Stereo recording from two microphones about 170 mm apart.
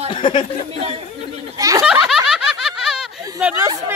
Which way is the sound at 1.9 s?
5° right (ahead or behind).